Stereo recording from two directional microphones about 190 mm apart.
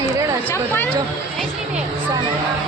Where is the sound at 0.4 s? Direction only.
10° left (ahead or behind).